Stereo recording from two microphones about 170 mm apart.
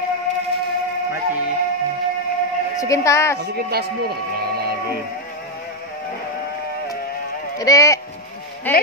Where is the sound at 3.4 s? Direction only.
70° right (ahead or behind).